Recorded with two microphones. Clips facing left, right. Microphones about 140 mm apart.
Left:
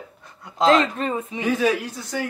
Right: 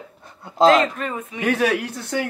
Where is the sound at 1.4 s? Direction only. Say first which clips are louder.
Right 1 dB; 70° right (ahead or behind).